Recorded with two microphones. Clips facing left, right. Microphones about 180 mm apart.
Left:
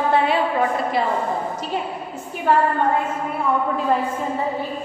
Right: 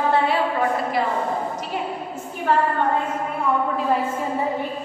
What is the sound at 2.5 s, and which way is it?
Speech, 10° left (ahead or behind).